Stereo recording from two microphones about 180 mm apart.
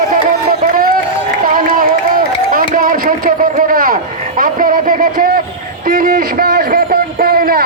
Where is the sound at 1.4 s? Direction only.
50° right (ahead or behind).